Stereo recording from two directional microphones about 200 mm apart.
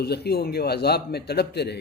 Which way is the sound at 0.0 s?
55° left (ahead or behind).